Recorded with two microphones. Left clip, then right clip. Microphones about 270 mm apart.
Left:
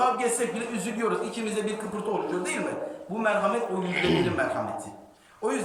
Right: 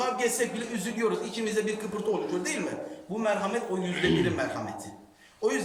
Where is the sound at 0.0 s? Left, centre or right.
Right.